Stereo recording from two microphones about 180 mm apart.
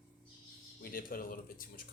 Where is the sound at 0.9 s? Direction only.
55° left (ahead or behind).